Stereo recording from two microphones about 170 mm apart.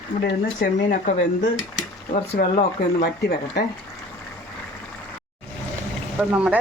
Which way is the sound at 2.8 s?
70° left (ahead or behind).